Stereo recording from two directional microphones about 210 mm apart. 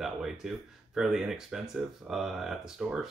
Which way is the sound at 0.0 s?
Centre (ahead or behind).